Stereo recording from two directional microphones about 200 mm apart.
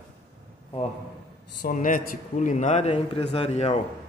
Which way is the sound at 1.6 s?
40° left (ahead or behind).